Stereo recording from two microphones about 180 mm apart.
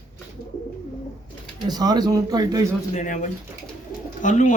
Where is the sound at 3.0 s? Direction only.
45° left (ahead or behind).